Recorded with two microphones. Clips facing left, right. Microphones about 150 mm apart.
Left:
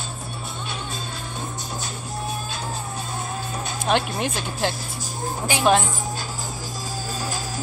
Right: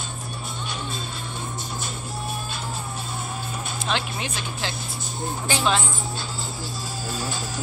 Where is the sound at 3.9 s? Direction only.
50° left (ahead or behind).